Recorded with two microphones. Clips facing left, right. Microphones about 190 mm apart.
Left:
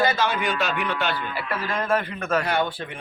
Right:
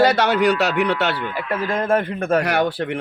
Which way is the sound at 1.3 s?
50° right (ahead or behind).